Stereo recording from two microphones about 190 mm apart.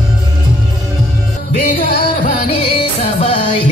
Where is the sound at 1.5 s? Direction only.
45° left (ahead or behind).